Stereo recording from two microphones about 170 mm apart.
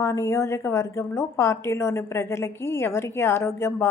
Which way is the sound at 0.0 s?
15° left (ahead or behind).